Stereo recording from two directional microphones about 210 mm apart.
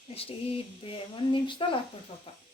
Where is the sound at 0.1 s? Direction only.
25° left (ahead or behind).